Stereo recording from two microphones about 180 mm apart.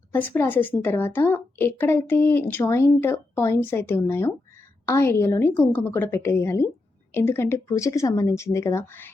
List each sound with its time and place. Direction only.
0.1 s speech: 10° left (ahead or behind)